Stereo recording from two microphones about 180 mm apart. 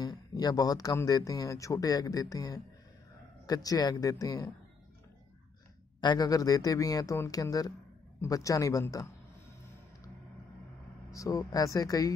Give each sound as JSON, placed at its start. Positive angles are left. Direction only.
{"t": 0.0, "sound": "speech", "side_deg": 20}
{"t": 5.9, "sound": "speech", "side_deg": 20}
{"t": 11.1, "sound": "speech", "side_deg": 20}